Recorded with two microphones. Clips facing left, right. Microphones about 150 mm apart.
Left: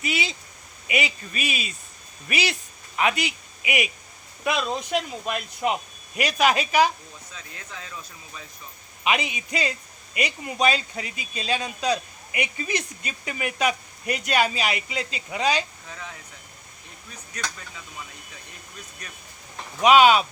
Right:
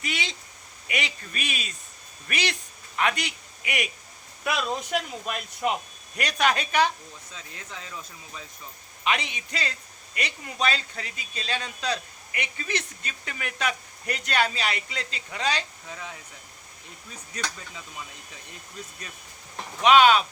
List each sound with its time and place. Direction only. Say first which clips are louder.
0.0 s a man's voice: left 4 dB; 5° left (ahead or behind)
9.0 s a man's voice: left 3 dB; 10° left (ahead or behind)
15.9 s speech: right 1 dB; 15° right (ahead or behind)
19.8 s a man's voice: left 2 dB; 10° left (ahead or behind)